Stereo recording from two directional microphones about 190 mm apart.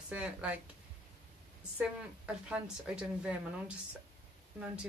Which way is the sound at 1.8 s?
5° right (ahead or behind).